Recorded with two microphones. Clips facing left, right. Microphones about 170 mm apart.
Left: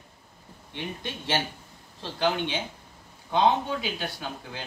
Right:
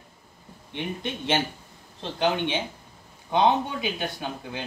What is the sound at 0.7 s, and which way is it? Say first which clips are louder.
Speech: right 4 dB; 20° right (ahead or behind).